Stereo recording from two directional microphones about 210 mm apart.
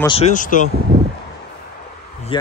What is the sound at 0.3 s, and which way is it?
Speech, 40° left (ahead or behind).